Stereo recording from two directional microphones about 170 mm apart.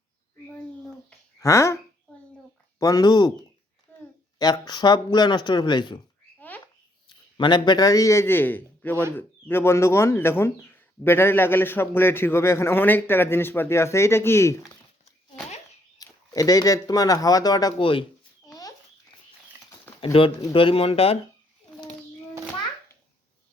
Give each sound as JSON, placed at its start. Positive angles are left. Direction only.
{"t": 1.4, "sound": "speech", "side_deg": 15}
{"t": 3.9, "sound": "a sound", "side_deg": 10}
{"t": 4.4, "sound": "speech", "side_deg": 25}
{"t": 7.3, "sound": "speech", "side_deg": 25}
{"t": 16.0, "sound": "speech", "side_deg": 20}
{"t": 20.1, "sound": "speech", "side_deg": 30}